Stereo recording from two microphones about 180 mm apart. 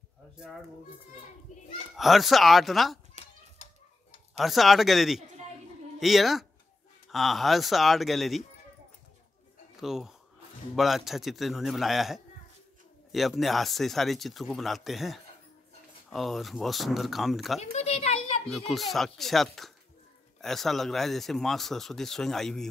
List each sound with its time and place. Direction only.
2.0 s speech: centre (ahead or behind)
4.4 s speech: centre (ahead or behind)
9.8 s speech: centre (ahead or behind)
17.6 s a sound: 35° left (ahead or behind)
18.5 s speech: centre (ahead or behind)